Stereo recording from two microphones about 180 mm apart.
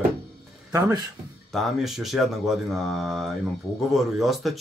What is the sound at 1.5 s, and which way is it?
Speech, centre (ahead or behind).